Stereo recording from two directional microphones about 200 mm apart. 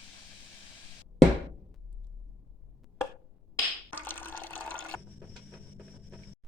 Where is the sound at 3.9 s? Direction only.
10° left (ahead or behind).